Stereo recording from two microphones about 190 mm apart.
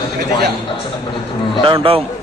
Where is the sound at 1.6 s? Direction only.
30° right (ahead or behind).